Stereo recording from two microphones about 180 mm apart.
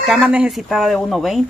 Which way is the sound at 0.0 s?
5° right (ahead or behind).